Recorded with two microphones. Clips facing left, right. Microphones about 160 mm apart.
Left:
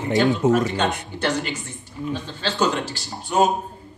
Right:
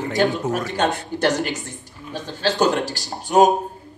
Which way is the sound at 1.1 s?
40° right (ahead or behind).